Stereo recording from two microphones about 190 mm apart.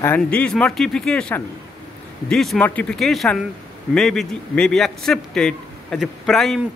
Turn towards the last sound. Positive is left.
turn(degrees=0)  # may be behind; listen again after turning